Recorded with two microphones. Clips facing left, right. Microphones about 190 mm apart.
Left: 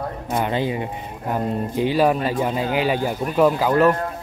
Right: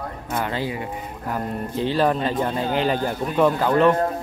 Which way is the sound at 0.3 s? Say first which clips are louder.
Left 3 dB; 20° left (ahead or behind).